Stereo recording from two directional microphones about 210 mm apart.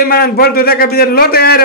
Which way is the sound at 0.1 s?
45° left (ahead or behind).